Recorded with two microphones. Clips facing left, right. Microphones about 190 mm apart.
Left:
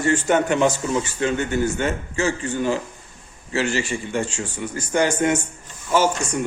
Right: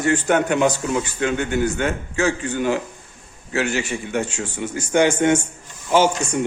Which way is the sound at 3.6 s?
60° right (ahead or behind).